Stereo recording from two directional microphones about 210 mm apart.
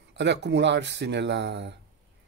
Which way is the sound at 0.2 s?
55° right (ahead or behind).